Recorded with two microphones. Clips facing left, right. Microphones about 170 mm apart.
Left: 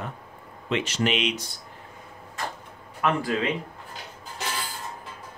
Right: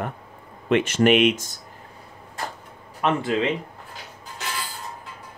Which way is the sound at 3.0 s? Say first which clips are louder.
Right 3 dB; 25° right (ahead or behind).